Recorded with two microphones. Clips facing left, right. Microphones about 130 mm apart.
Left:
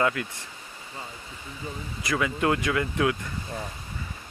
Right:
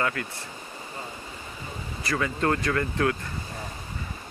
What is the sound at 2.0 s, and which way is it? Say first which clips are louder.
Speech: left 1 dB; 10° left (ahead or behind).